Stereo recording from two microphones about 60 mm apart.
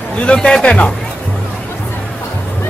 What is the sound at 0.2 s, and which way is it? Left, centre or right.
Speech, centre.